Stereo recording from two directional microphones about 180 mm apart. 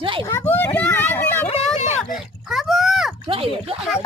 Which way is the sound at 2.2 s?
Centre (ahead or behind).